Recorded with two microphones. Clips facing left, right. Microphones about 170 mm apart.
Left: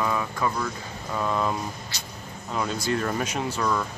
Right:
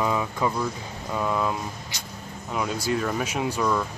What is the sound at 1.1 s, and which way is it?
Speech, centre (ahead or behind).